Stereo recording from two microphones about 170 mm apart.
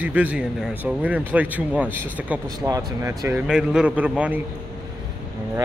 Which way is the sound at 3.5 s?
5° right (ahead or behind).